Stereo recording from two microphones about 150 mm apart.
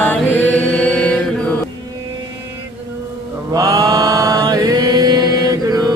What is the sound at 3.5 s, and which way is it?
Chant, 25° right (ahead or behind).